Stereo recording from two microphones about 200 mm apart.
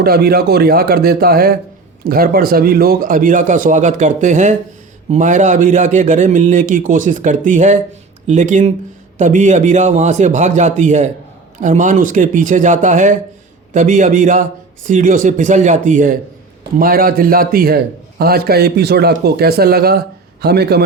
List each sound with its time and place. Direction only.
0.0 s a man's voice: 50° right (ahead or behind)